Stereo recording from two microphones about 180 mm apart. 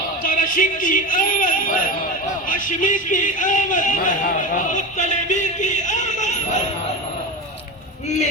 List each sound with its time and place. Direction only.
0.2 s speech: 50° left (ahead or behind)